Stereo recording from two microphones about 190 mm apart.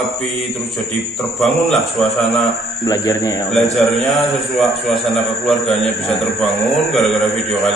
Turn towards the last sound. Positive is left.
turn(degrees=0)  # may be behind; listen again after turning